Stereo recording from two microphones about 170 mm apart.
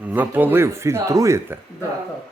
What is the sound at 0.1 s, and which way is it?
A man's voice, 10° right (ahead or behind).